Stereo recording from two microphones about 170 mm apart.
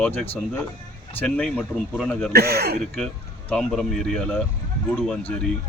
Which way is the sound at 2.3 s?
65° right (ahead or behind).